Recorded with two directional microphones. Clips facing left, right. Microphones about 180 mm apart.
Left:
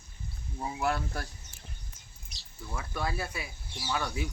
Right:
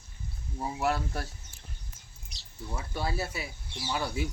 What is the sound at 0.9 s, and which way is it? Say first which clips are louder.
Speech: right 2 dB; 25° right (ahead or behind).